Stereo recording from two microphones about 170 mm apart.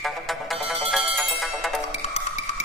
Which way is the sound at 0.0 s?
Centre (ahead or behind).